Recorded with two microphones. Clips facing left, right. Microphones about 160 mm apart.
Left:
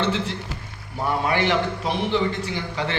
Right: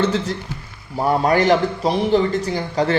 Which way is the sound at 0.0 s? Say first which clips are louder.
Right 4 dB; 40° right (ahead or behind).